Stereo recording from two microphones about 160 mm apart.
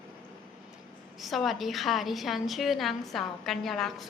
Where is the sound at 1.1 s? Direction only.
Centre (ahead or behind).